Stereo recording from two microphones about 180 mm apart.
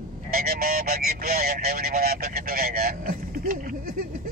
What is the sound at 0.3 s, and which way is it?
Speech, 55° right (ahead or behind).